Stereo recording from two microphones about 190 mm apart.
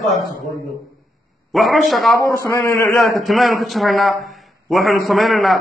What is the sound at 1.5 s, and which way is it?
Speech, centre (ahead or behind).